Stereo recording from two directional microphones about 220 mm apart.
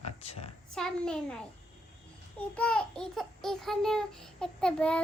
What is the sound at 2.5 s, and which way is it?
A child's voice, 5° left (ahead or behind).